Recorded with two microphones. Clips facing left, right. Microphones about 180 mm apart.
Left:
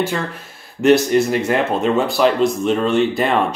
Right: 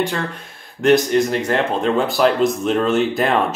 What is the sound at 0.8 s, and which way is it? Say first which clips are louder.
Speech: left 1 dB; 5° left (ahead or behind).